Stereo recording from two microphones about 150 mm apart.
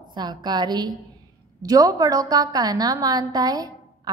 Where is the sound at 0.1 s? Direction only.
30° right (ahead or behind).